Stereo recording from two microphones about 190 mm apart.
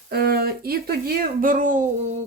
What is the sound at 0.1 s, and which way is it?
A woman's voice, 55° right (ahead or behind).